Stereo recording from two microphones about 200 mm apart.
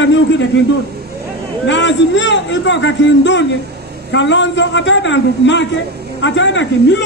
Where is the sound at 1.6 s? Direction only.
65° left (ahead or behind).